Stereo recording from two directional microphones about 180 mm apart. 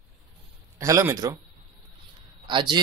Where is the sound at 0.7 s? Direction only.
15° right (ahead or behind).